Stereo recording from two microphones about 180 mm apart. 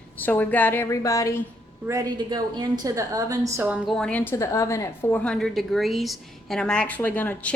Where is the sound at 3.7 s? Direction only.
5° right (ahead or behind).